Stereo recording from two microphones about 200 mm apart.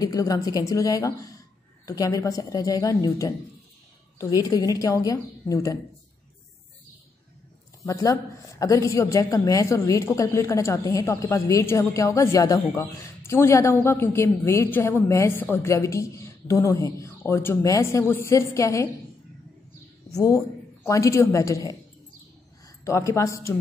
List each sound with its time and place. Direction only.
0.0 s a woman's voice: 20° left (ahead or behind)
7.8 s a woman's voice: 15° left (ahead or behind)
20.1 s a woman's voice: 15° left (ahead or behind)
22.8 s a woman's voice: 15° left (ahead or behind)